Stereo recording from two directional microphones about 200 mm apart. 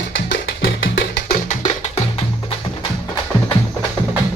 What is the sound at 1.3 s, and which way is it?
Music, 40° left (ahead or behind).